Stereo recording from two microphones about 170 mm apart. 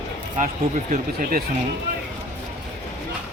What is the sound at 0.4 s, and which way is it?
Speech, 50° right (ahead or behind).